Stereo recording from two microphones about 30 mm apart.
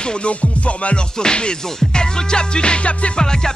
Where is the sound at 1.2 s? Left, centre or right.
Left.